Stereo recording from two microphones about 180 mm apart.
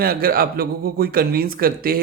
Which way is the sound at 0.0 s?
55° right (ahead or behind).